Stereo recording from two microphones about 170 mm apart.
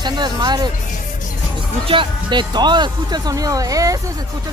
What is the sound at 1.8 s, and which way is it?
Speech, 30° right (ahead or behind).